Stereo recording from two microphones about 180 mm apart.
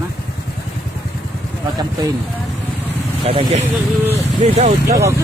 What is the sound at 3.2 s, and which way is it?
Speech, 30° right (ahead or behind).